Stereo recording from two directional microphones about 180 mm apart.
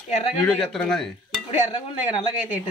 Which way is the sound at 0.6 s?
5° left (ahead or behind).